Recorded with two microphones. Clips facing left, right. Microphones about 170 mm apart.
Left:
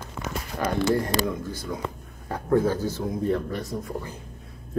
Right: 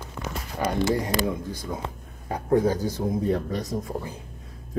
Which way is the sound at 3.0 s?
30° right (ahead or behind).